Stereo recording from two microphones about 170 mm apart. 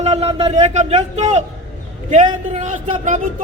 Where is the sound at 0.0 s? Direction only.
40° right (ahead or behind).